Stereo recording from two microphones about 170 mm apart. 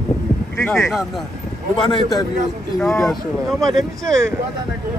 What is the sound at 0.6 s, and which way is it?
Speech, 10° left (ahead or behind).